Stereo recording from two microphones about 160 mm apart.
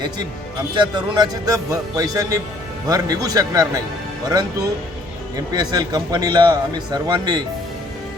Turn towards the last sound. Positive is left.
turn(degrees=-25)  # may be behind; listen again after turning